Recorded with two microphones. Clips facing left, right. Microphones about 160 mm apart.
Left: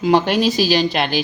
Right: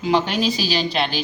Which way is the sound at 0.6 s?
50° left (ahead or behind).